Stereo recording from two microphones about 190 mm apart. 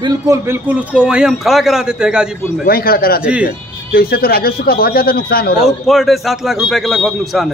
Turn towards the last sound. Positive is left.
turn(degrees=0)  # may be behind; listen again after turning